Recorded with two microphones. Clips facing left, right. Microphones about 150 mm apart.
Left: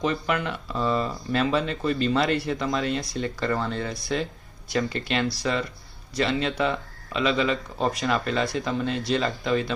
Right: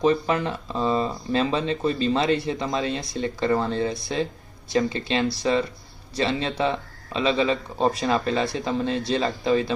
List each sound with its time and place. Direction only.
0.0 s speech: 30° right (ahead or behind)